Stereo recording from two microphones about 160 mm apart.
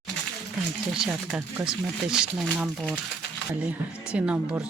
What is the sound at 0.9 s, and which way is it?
Speech, 5° right (ahead or behind).